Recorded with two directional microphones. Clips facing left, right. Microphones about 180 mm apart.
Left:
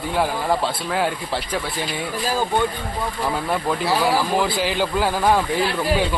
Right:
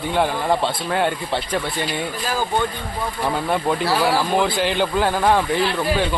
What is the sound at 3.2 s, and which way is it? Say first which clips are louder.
A man's voice: right 3 dB; centre (ahead or behind).